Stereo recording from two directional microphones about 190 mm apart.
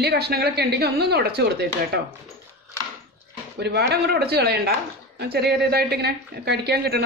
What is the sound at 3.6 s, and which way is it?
A woman's voice, 60° right (ahead or behind).